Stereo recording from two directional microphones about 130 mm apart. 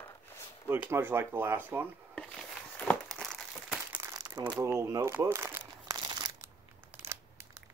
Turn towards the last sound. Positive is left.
turn(degrees=-20)  # may be behind; listen again after turning